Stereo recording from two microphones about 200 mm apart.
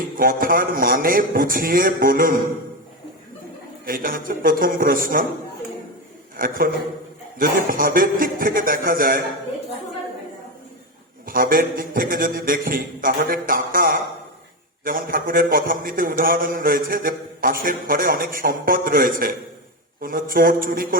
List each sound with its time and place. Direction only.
0.0 s a man's voice: 45° right (ahead or behind)
3.8 s a man's voice: 45° right (ahead or behind)
6.3 s a man's voice: 45° right (ahead or behind)
11.3 s a man's voice: 45° right (ahead or behind)